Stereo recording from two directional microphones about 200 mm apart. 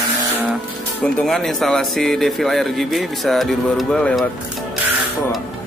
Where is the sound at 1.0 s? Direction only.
Centre (ahead or behind).